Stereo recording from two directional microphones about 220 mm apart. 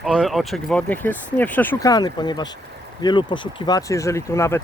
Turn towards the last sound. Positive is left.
turn(degrees=10)  # may be behind; listen again after turning